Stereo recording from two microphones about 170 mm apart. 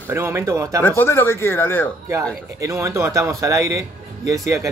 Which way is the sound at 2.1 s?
15° right (ahead or behind).